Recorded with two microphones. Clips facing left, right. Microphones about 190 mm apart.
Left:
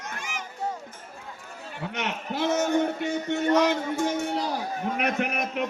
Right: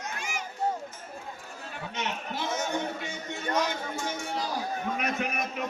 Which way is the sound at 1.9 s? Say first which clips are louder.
Left 3 dB; 60° left (ahead or behind).